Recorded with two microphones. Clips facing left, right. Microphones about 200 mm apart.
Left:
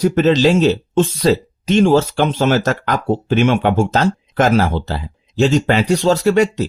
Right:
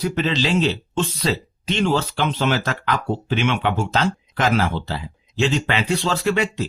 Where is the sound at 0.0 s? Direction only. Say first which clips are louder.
Left 9 dB; 45° left (ahead or behind).